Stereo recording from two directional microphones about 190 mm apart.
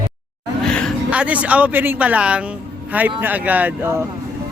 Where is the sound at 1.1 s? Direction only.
5° right (ahead or behind).